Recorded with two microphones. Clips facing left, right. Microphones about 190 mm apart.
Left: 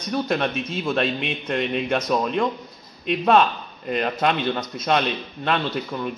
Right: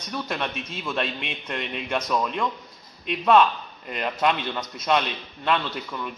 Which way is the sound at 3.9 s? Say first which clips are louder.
Left 3 dB; 40° left (ahead or behind).